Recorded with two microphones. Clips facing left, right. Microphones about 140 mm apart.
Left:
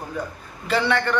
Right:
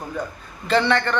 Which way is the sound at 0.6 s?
10° left (ahead or behind).